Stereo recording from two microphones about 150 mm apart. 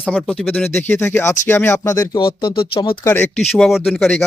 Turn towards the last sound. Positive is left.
turn(degrees=0)  # may be behind; listen again after turning